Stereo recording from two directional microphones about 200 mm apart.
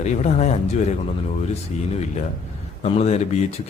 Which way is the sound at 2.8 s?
35° left (ahead or behind).